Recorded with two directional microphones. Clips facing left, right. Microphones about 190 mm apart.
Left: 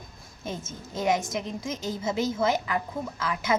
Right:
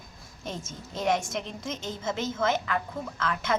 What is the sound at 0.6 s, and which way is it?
Speech, 30° right (ahead or behind).